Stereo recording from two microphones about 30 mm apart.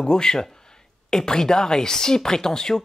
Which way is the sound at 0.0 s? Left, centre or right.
Left.